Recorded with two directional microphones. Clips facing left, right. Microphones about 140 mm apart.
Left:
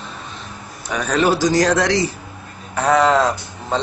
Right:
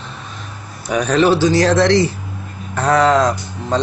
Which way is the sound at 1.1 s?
10° left (ahead or behind).